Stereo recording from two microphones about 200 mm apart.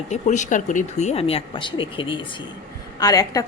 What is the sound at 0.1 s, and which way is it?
A woman's voice, 35° left (ahead or behind).